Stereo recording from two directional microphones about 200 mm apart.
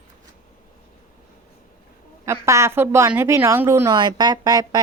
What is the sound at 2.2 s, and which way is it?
A woman's voice, 15° right (ahead or behind).